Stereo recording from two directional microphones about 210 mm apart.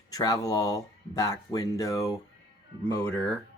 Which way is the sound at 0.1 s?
15° left (ahead or behind).